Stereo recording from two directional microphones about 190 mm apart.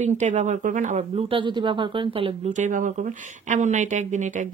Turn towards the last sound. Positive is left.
turn(degrees=-40)  # may be behind; listen again after turning